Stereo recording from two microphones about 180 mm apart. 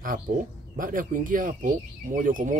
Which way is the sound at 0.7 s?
50° right (ahead or behind).